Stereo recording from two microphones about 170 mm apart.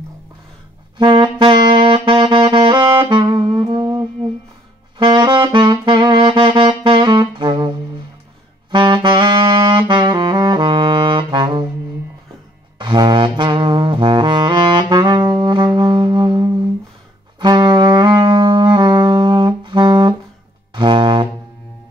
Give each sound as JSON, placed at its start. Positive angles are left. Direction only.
{"t": 0.9, "sound": "saxophone", "side_deg": -25}
{"t": 4.9, "sound": "saxophone", "side_deg": -25}
{"t": 12.7, "sound": "brass instrument", "side_deg": -25}
{"t": 17.4, "sound": "saxophone", "side_deg": -25}
{"t": 20.7, "sound": "music", "side_deg": -30}